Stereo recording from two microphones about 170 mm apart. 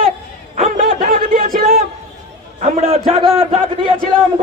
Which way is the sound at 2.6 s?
40° right (ahead or behind).